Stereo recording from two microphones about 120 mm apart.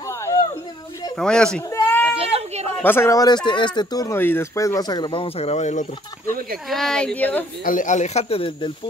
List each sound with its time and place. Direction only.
0.2 s a sound: 30° left (ahead or behind)
1.1 s speech: 5° left (ahead or behind)
1.9 s goat: 20° left (ahead or behind)
2.1 s a sound: 60° right (ahead or behind)
2.8 s speech: 20° left (ahead or behind)
3.4 s speech: 40° left (ahead or behind)
4.1 s speech: 20° left (ahead or behind); by 5.9 s 75° left (ahead or behind)
6.7 s speech: 5° left (ahead or behind)
7.7 s speech: 90° left; by 8.7 s 45° left (ahead or behind)